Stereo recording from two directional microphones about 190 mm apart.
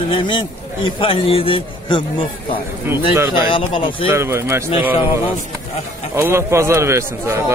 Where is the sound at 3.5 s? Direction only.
25° left (ahead or behind).